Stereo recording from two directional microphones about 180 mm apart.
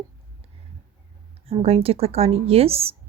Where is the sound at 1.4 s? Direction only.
35° right (ahead or behind).